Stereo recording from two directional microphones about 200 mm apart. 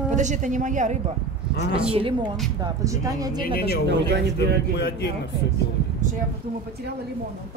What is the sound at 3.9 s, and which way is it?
Speech, 60° right (ahead or behind).